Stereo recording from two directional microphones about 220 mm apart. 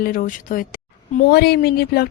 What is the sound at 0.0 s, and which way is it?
Speech, 40° left (ahead or behind).